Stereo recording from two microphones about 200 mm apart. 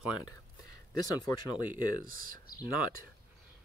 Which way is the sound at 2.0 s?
45° right (ahead or behind).